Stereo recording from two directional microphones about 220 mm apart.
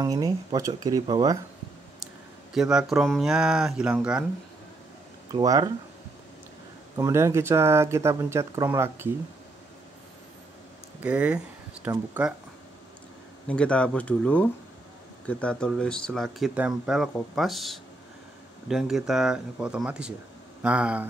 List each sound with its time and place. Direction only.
0.0 s speech: 15° right (ahead or behind)
2.5 s speech: 5° right (ahead or behind)
5.3 s speech: 15° right (ahead or behind)
7.0 s speech: 15° right (ahead or behind)
11.0 s speech: 5° right (ahead or behind)
13.5 s speech: 5° left (ahead or behind)